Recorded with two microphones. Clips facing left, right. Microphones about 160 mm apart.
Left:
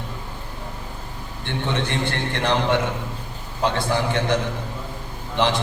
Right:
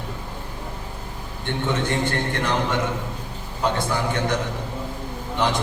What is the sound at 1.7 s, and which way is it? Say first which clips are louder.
Speech: right 2 dB; 45° right (ahead or behind).